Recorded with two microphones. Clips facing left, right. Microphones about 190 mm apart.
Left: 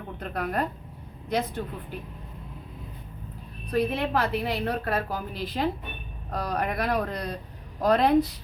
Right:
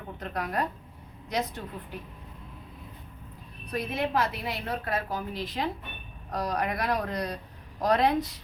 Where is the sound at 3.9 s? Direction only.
60° left (ahead or behind).